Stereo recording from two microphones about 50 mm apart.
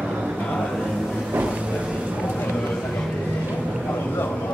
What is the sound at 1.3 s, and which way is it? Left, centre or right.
Vehicle, right.